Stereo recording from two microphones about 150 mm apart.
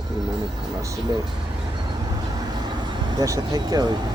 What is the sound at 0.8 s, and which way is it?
Speech, 20° right (ahead or behind).